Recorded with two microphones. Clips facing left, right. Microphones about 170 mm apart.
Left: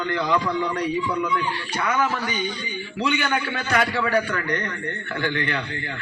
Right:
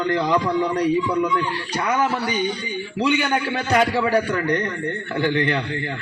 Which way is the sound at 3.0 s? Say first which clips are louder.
Right 3 dB; 30° right (ahead or behind).